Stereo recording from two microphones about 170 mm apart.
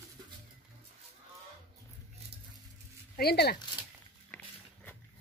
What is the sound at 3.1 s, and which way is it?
Speech, 70° left (ahead or behind).